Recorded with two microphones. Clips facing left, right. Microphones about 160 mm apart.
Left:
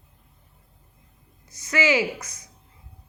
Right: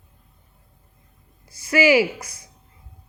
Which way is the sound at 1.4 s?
30° right (ahead or behind).